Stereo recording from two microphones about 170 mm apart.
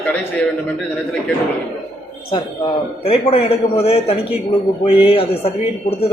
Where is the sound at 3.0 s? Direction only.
35° left (ahead or behind).